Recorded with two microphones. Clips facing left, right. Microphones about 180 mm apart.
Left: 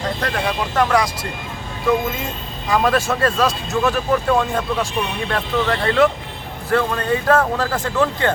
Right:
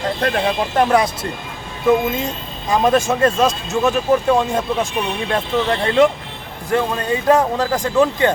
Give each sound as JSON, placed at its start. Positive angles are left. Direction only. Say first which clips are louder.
{"t": 0.2, "sound": "speech", "louder": "right 4 dB", "side_deg": -25}
{"t": 2.6, "sound": "speech", "louder": "right 2 dB", "side_deg": -20}